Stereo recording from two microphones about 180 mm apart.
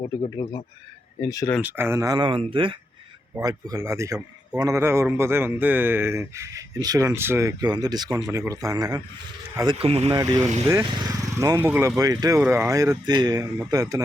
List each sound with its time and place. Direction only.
0.3 s speech: 20° left (ahead or behind)
1.6 s speech: 10° right (ahead or behind); by 2.7 s 30° right (ahead or behind)
3.3 s a man's voice: 15° right (ahead or behind); by 10.2 s 35° right (ahead or behind)
10.2 s a man's voice: 20° right (ahead or behind)